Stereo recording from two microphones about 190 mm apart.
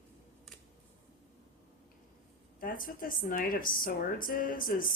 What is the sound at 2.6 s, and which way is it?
Speech, 45° left (ahead or behind).